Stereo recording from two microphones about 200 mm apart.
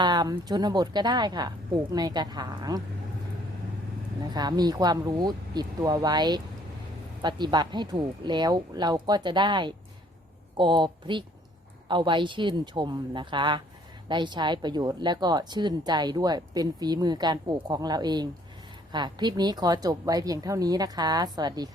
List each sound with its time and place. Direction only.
0.0 s speech: 20° right (ahead or behind)
4.4 s speech: 20° right (ahead or behind)